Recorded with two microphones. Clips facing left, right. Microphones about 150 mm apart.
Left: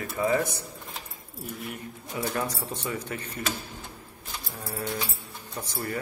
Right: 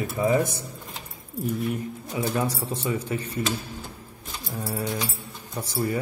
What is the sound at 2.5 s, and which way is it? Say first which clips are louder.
Speech: right 5 dB; 30° right (ahead or behind).